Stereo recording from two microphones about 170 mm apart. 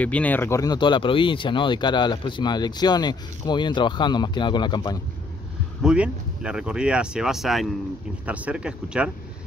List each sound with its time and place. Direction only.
0.0 s speech: 10° left (ahead or behind); by 5.0 s 25° left (ahead or behind)
5.8 s speech: 5° right (ahead or behind)